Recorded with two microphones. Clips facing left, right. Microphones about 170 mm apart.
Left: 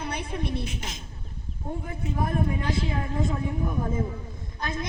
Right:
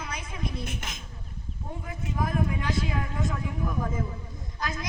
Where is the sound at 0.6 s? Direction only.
55° right (ahead or behind).